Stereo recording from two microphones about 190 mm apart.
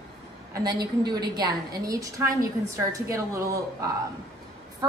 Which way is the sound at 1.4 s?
20° right (ahead or behind).